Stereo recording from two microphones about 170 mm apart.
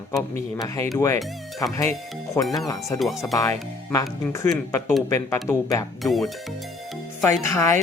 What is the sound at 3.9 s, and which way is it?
Speech, 20° left (ahead or behind).